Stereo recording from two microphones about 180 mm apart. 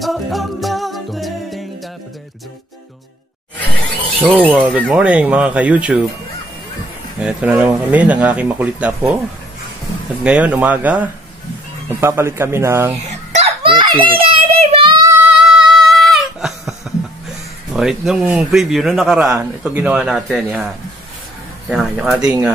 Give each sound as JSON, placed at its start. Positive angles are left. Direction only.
{"t": 0.0, "sound": "a capella", "side_deg": 0}
{"t": 4.5, "sound": "speech", "side_deg": -10}
{"t": 7.2, "sound": "speech", "side_deg": -5}
{"t": 10.2, "sound": "speech", "side_deg": -5}
{"t": 13.3, "sound": "a sound", "side_deg": -35}
{"t": 14.1, "sound": "child singing", "side_deg": -35}
{"t": 17.7, "sound": "speech", "side_deg": 0}